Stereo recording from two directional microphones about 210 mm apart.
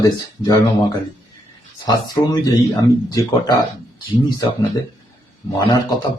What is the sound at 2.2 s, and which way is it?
Speech, 15° left (ahead or behind).